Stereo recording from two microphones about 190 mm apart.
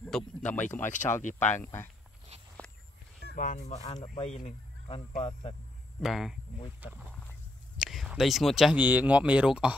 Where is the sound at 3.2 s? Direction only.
45° left (ahead or behind); by 5.5 s 30° left (ahead or behind).